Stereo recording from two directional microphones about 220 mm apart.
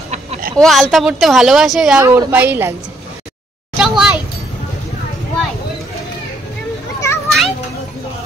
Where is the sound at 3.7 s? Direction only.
Centre (ahead or behind).